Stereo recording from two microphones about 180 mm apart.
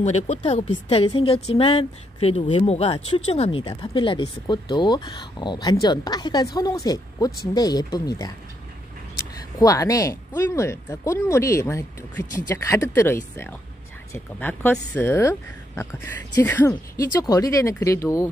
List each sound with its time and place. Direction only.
0.0 s a woman's voice: 40° left (ahead or behind); by 8.3 s 20° left (ahead or behind)
9.6 s speech: 20° left (ahead or behind)